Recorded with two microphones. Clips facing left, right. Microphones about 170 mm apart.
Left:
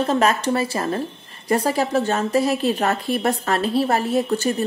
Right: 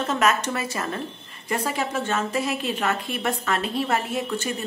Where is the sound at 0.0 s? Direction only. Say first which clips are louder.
Left 4 dB; 30° left (ahead or behind).